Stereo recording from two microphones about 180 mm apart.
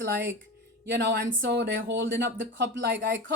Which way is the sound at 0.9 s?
70° right (ahead or behind).